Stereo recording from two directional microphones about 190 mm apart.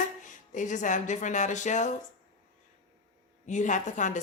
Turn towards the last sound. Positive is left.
turn(degrees=40)  # may be behind; listen again after turning